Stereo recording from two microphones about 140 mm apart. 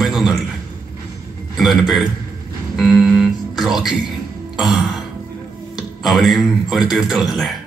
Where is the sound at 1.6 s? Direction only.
Centre (ahead or behind).